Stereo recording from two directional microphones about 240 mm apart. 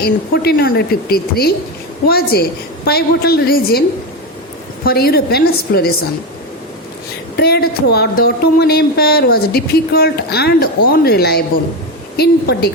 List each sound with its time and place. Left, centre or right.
0.0 s speech: left
7.3 s speech: left